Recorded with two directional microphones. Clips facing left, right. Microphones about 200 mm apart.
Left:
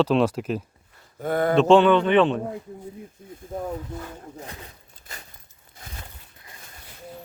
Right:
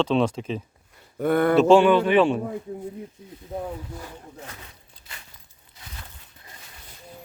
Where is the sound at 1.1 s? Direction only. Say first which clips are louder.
Right 3 dB; 65° right (ahead or behind).